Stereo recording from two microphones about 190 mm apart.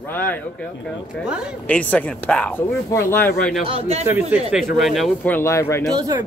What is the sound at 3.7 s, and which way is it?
Speech, 30° right (ahead or behind).